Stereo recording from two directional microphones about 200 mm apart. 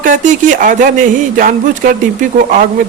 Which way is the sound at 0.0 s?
40° right (ahead or behind).